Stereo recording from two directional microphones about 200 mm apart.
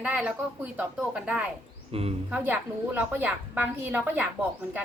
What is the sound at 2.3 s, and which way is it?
A woman's voice, 10° right (ahead or behind).